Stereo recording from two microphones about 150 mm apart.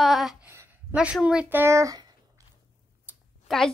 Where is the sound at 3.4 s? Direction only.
5° left (ahead or behind).